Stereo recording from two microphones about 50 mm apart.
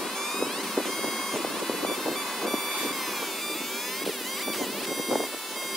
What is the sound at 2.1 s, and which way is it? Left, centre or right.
Vehicle, centre.